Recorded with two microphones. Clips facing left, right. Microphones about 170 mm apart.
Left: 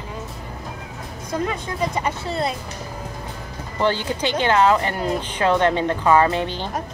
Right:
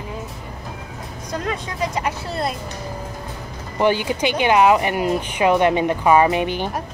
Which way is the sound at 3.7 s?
15° right (ahead or behind).